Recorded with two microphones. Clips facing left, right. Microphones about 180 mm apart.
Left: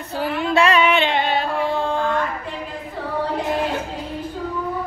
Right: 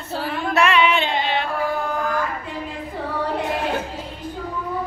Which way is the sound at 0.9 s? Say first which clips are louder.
Left 3 dB; 65° left (ahead or behind).